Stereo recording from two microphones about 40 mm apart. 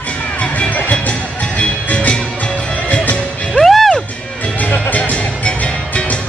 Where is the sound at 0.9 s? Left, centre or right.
Left.